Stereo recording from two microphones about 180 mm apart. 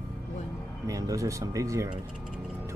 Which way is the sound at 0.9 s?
20° right (ahead or behind).